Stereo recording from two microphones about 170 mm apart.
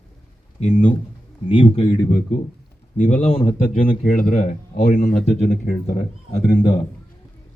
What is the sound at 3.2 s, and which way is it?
Speech, 35° left (ahead or behind).